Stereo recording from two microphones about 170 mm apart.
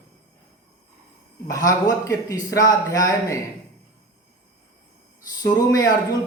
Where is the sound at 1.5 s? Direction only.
20° left (ahead or behind).